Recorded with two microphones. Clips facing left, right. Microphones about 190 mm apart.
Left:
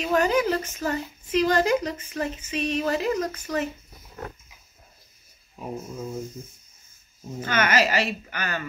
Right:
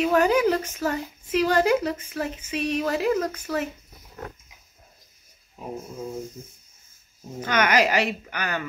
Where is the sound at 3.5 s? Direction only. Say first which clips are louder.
Even; 15° left (ahead or behind).